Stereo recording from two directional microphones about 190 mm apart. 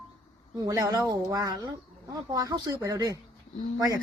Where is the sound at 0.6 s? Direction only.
20° right (ahead or behind).